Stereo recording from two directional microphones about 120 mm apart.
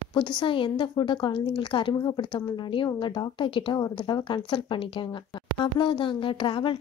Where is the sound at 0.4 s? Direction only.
45° left (ahead or behind).